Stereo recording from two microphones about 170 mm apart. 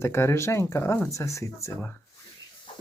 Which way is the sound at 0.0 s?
15° left (ahead or behind).